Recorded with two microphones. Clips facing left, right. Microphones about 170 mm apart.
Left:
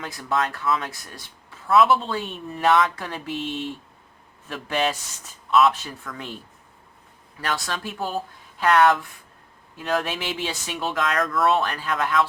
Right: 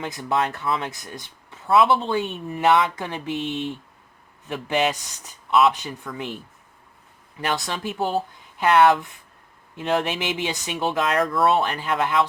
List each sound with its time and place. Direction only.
0.0 s speech: 20° right (ahead or behind)
7.4 s speech: 20° right (ahead or behind)